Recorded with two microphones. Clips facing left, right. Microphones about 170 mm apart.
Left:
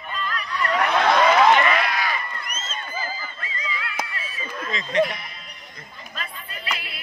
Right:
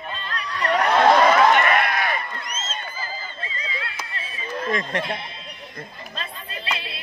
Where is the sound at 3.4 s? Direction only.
30° right (ahead or behind).